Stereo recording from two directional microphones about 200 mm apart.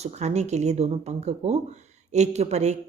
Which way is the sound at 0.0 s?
35° right (ahead or behind).